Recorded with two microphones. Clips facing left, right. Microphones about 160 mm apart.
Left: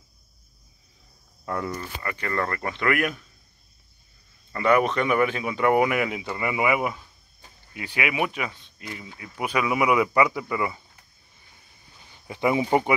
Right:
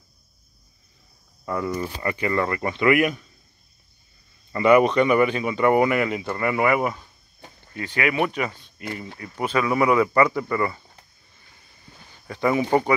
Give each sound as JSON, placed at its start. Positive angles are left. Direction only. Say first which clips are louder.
{"t": 1.4, "sound": "speech", "louder": "right 3 dB", "side_deg": 0}
{"t": 1.8, "sound": "speech", "louder": "right 7 dB", "side_deg": -15}
{"t": 4.5, "sound": "speech", "louder": "right 5 dB", "side_deg": -5}
{"t": 9.2, "sound": "speech", "louder": "right 2 dB", "side_deg": 10}
{"t": 12.3, "sound": "speech", "louder": "right 1 dB", "side_deg": 15}